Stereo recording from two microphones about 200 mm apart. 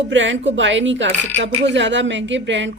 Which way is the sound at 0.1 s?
70° right (ahead or behind).